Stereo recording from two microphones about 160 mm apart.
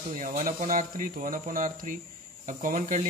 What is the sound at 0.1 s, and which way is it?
Speech, 50° right (ahead or behind).